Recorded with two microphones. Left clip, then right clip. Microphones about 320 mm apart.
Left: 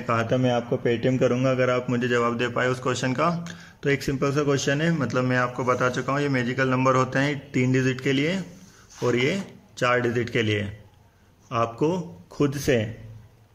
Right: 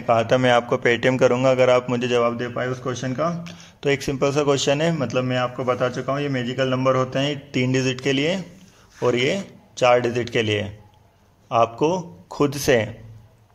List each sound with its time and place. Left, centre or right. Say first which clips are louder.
0.0 s speech: right 6 dB; centre
0.6 s a man's voice: right 6 dB; right
1.2 s a man's voice: right 6 dB; centre